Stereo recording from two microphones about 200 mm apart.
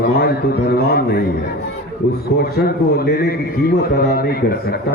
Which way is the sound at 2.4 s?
50° left (ahead or behind).